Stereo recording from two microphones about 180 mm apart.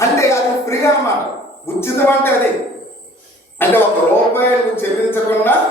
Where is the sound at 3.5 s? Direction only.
10° left (ahead or behind).